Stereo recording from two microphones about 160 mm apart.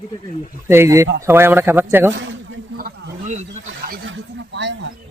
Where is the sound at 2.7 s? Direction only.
65° right (ahead or behind).